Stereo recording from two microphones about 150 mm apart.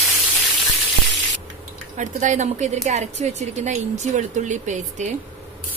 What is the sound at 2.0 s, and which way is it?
Speech, 55° right (ahead or behind).